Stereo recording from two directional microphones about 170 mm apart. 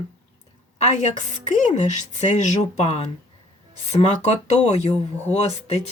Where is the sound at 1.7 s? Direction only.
45° left (ahead or behind).